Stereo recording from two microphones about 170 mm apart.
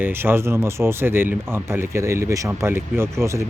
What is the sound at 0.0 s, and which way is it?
Speech, 15° right (ahead or behind).